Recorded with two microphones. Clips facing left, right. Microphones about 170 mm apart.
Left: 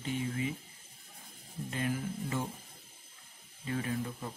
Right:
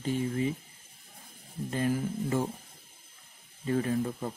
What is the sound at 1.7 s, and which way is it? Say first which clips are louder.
Speech: right 6 dB; 40° right (ahead or behind).